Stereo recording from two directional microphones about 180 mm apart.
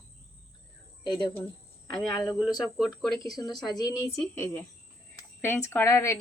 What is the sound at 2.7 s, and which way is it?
Speech, centre (ahead or behind).